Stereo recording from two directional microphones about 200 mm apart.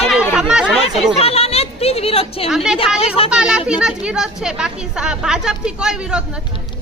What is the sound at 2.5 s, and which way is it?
A woman's voice, 5° right (ahead or behind).